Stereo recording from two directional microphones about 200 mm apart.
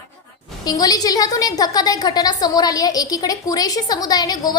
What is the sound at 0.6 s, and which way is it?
A woman's voice, 20° left (ahead or behind).